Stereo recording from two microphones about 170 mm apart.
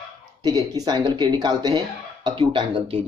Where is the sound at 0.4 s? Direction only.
20° right (ahead or behind).